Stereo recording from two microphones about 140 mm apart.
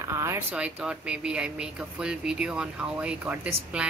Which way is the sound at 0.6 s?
5° right (ahead or behind).